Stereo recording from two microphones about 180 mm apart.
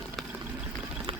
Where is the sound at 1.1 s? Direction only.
30° right (ahead or behind).